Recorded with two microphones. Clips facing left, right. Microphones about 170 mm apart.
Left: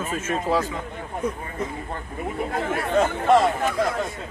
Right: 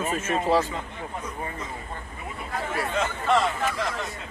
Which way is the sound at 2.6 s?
55° left (ahead or behind).